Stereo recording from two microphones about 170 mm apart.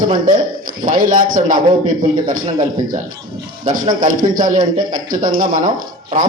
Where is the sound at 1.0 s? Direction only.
55° right (ahead or behind).